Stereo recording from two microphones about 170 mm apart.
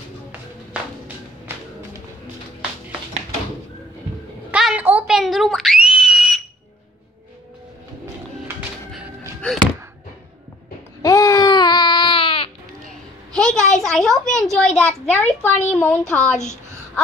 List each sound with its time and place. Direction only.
4.5 s screaming: 5° right (ahead or behind)
8.5 s music: 5° right (ahead or behind)
9.4 s music: 5° left (ahead or behind)
11.0 s baby cry: 20° left (ahead or behind)
13.3 s a sound: 5° left (ahead or behind)
15.7 s speech: 5° left (ahead or behind)